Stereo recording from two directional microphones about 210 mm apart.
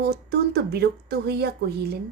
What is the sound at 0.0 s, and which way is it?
Speech, 50° right (ahead or behind).